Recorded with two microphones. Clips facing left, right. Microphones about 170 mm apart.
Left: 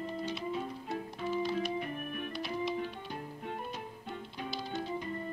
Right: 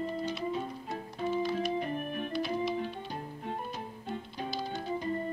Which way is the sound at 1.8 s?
30° right (ahead or behind).